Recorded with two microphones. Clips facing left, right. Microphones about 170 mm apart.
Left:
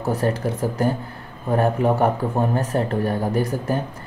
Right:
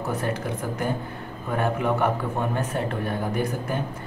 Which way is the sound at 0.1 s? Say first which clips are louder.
Left 7 dB; 35° left (ahead or behind).